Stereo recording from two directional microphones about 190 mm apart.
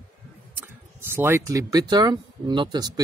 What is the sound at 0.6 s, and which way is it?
Speech, 10° right (ahead or behind).